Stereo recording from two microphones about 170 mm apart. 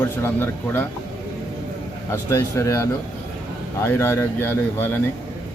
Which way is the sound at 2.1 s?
15° left (ahead or behind).